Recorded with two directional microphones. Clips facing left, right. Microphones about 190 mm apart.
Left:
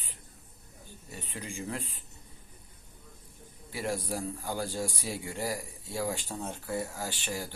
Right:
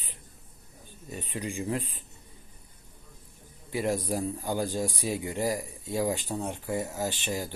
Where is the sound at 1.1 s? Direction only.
15° right (ahead or behind).